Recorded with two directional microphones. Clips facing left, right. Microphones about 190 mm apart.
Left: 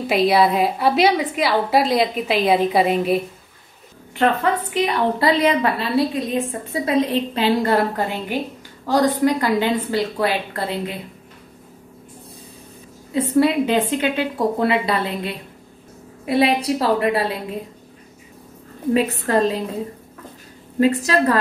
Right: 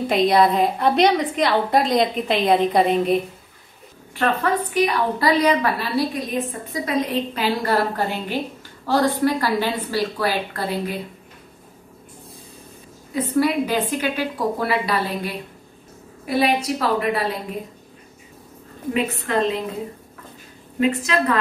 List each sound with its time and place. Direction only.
0.0 s a woman's voice: 5° left (ahead or behind)
4.1 s a woman's voice: 20° left (ahead or behind)
8.8 s a woman's voice: 15° left (ahead or behind)
13.1 s a woman's voice: 30° left (ahead or behind)
18.9 s a woman's voice: 35° left (ahead or behind)
20.8 s a woman's voice: 35° left (ahead or behind)